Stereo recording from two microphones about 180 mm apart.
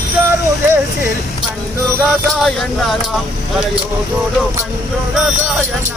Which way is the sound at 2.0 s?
Centre (ahead or behind).